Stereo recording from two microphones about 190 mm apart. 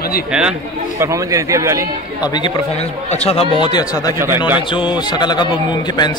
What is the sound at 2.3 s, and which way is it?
Speech, 20° left (ahead or behind).